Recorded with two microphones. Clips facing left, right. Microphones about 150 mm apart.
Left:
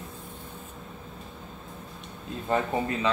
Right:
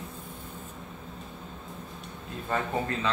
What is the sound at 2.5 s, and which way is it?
Speech, 20° left (ahead or behind).